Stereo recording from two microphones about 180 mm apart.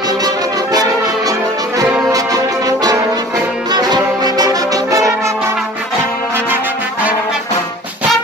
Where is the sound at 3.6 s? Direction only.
25° right (ahead or behind).